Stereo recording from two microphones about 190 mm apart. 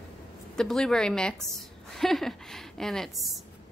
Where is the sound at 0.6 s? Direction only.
Centre (ahead or behind).